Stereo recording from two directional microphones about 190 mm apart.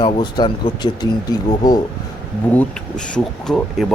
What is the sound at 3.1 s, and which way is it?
Speech, 5° left (ahead or behind).